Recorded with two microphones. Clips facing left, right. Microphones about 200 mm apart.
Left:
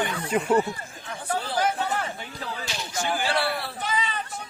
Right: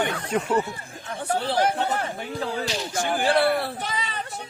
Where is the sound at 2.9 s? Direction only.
55° right (ahead or behind).